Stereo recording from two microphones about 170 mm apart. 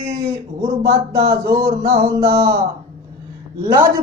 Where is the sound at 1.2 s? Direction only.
20° right (ahead or behind).